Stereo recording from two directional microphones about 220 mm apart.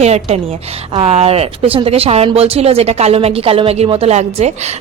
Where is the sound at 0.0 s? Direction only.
30° right (ahead or behind).